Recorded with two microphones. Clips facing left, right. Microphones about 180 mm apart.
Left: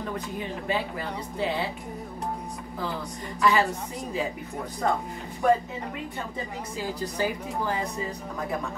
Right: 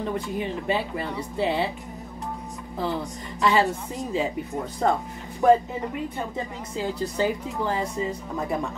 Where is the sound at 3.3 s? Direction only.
30° right (ahead or behind).